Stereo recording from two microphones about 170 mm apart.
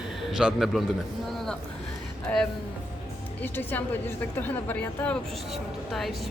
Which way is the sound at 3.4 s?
10° left (ahead or behind).